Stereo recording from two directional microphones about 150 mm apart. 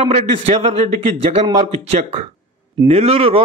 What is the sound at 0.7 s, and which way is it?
A man's voice, 45° right (ahead or behind).